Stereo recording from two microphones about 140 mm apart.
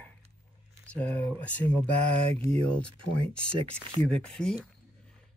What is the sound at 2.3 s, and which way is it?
Speech, 50° right (ahead or behind).